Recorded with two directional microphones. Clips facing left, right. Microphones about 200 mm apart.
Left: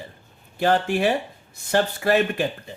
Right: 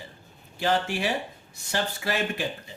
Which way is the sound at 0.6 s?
55° left (ahead or behind).